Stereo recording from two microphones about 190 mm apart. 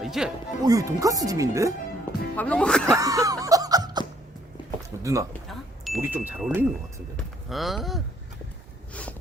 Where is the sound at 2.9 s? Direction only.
20° right (ahead or behind).